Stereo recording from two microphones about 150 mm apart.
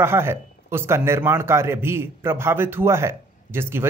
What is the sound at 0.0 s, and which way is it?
A man's voice, 15° right (ahead or behind).